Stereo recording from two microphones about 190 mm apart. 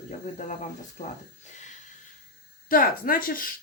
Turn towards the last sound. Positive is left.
turn(degrees=50)  # may be behind; listen again after turning